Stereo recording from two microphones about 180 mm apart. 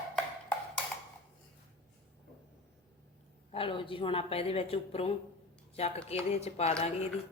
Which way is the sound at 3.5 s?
30° left (ahead or behind).